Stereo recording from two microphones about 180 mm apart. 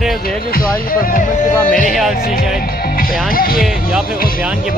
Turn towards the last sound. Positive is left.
turn(degrees=55)  # may be behind; listen again after turning